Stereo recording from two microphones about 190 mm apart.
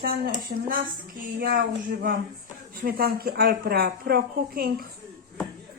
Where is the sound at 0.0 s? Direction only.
50° right (ahead or behind).